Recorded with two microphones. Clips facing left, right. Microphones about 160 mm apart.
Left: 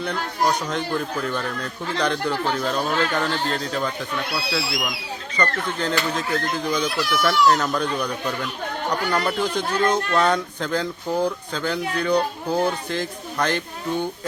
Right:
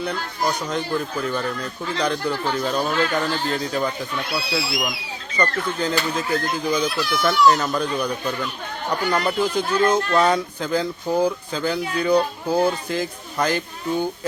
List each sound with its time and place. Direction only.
0.0 s speech: 5° right (ahead or behind)